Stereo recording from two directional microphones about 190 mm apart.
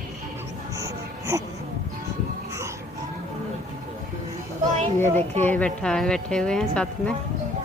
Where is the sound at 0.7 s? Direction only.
15° right (ahead or behind).